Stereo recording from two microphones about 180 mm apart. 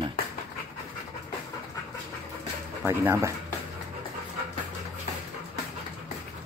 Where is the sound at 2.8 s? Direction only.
15° right (ahead or behind).